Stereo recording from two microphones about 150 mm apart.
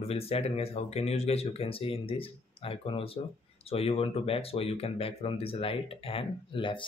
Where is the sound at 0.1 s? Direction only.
40° left (ahead or behind).